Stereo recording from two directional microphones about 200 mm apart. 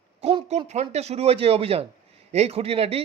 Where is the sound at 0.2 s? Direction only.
30° right (ahead or behind).